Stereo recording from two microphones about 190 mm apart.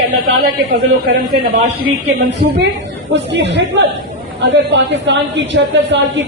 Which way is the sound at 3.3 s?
70° right (ahead or behind).